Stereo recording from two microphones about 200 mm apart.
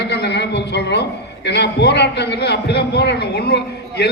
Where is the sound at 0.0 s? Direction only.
55° left (ahead or behind).